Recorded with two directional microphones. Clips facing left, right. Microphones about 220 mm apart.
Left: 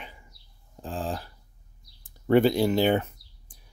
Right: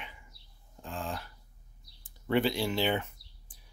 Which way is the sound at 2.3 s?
45° left (ahead or behind).